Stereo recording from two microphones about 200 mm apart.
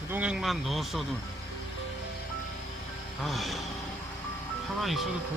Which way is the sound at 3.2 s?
Centre (ahead or behind).